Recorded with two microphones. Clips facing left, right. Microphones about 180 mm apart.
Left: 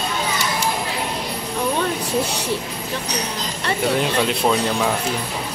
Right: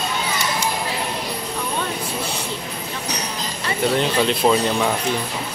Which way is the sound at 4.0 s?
5° left (ahead or behind).